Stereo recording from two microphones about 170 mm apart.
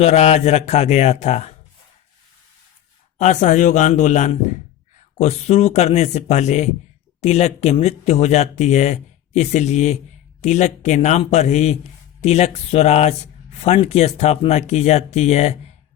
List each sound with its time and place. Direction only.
0.0 s speech: 40° left (ahead or behind)
3.2 s a man's voice: 45° left (ahead or behind)